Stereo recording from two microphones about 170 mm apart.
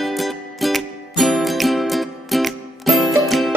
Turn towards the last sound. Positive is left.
turn(degrees=0)  # may be behind; listen again after turning